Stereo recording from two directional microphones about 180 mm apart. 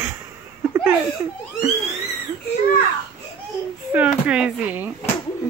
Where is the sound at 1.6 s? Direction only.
15° right (ahead or behind).